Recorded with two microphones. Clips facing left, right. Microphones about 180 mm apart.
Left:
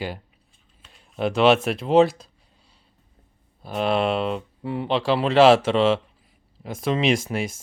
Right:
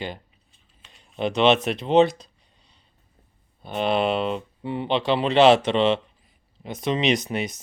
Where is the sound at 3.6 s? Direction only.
Centre (ahead or behind).